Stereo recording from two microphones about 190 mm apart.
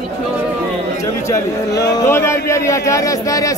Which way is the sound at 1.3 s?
20° left (ahead or behind).